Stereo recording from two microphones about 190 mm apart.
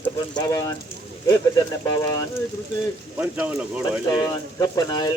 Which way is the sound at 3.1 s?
10° right (ahead or behind).